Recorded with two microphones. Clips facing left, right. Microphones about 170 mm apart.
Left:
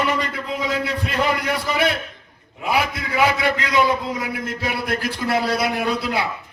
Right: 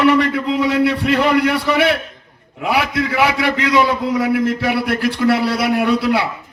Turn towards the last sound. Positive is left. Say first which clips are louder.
# right 7 dB
turn(degrees=-70)  # may be behind; listen again after turning